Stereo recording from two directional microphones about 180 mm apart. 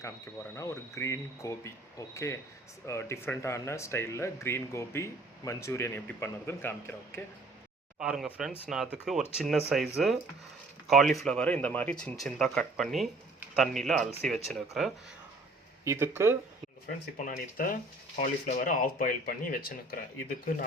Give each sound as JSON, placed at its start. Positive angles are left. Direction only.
{"t": 0.5, "sound": "speech", "side_deg": 15}
{"t": 7.9, "sound": "speech", "side_deg": -5}
{"t": 15.8, "sound": "speech", "side_deg": -15}
{"t": 16.8, "sound": "speech", "side_deg": 50}